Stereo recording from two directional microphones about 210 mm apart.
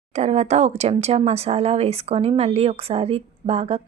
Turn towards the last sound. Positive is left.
turn(degrees=-30)  # may be behind; listen again after turning